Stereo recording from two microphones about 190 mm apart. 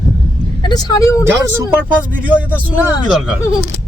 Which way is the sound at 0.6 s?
20° left (ahead or behind).